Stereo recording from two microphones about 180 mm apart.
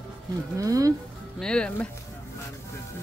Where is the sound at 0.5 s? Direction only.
20° right (ahead or behind).